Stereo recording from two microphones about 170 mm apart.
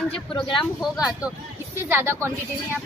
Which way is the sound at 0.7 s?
5° right (ahead or behind).